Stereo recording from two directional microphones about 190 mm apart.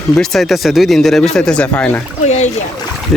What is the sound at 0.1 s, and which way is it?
Speech, centre (ahead or behind).